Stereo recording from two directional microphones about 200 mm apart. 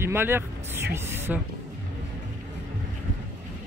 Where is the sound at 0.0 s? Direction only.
10° right (ahead or behind).